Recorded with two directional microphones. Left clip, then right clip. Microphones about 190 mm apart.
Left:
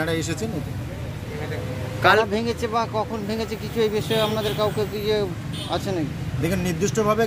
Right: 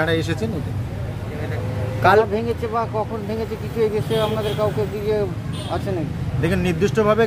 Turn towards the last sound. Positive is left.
turn(degrees=5)  # may be behind; listen again after turning